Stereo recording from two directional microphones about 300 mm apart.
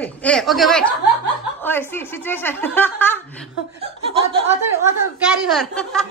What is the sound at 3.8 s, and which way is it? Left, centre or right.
Speech, centre.